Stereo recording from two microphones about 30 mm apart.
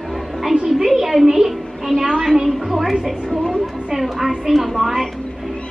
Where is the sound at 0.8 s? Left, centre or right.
Centre.